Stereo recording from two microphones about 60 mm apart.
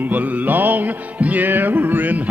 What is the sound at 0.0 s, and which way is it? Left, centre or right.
Music, right.